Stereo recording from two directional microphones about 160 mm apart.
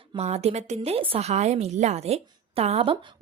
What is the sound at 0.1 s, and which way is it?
A woman's voice, 40° right (ahead or behind).